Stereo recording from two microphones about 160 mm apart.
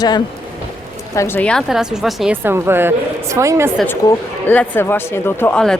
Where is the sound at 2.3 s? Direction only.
15° right (ahead or behind).